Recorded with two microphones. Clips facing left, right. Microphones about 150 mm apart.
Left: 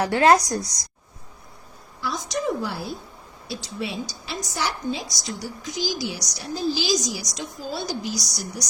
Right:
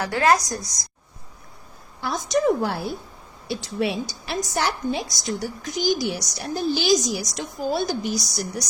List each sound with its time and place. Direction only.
0.0 s a woman's voice: 25° left (ahead or behind)
2.0 s a woman's voice: 60° right (ahead or behind)